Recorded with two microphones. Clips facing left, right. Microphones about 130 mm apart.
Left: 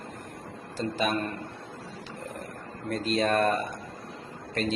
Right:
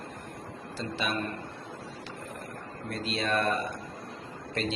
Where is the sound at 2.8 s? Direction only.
45° left (ahead or behind).